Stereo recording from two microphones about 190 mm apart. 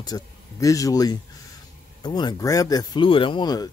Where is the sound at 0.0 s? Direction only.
20° left (ahead or behind).